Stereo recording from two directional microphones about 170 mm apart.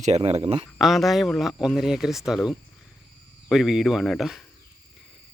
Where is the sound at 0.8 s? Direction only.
Centre (ahead or behind).